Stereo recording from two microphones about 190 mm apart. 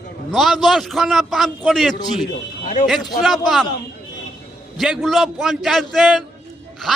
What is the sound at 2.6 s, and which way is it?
Speech, 40° left (ahead or behind).